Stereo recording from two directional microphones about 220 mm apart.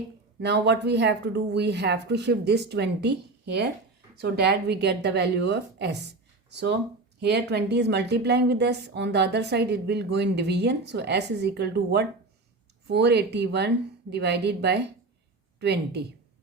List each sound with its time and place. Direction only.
0.3 s a woman's voice: 50° right (ahead or behind)